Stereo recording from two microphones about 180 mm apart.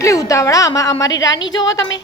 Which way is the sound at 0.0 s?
15° left (ahead or behind).